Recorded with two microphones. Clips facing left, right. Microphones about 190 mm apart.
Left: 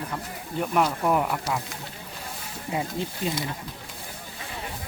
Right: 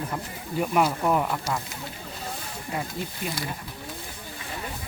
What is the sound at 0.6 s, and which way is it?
Speech, 5° right (ahead or behind).